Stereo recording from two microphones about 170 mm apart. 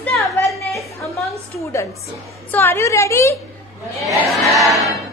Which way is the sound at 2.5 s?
15° left (ahead or behind).